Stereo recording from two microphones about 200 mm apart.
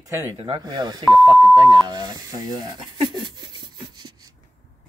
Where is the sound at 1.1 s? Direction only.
20° right (ahead or behind).